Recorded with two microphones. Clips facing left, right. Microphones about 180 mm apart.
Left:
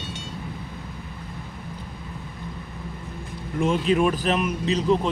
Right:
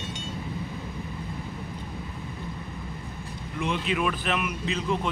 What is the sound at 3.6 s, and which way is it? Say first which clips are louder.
Speech: left 7 dB; 45° left (ahead or behind).